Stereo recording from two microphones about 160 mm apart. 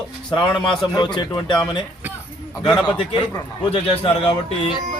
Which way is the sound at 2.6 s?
25° left (ahead or behind).